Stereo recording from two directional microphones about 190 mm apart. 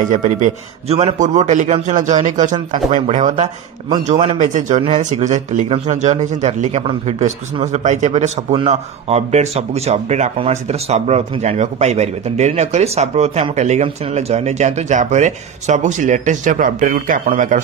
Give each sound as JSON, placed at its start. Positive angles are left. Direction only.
{"t": 0.0, "sound": "speech", "side_deg": -40}